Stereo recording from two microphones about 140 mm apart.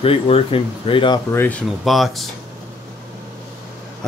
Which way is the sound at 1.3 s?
15° left (ahead or behind).